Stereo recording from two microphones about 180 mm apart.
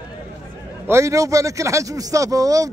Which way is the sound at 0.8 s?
15° right (ahead or behind).